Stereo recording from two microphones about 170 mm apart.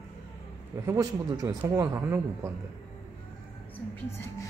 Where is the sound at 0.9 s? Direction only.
20° right (ahead or behind).